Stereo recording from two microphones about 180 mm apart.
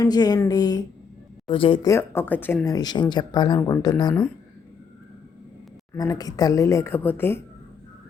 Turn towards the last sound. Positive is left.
turn(degrees=10)  # may be behind; listen again after turning